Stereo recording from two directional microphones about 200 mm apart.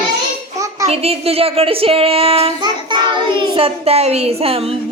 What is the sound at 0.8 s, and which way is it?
Speech, 30° right (ahead or behind).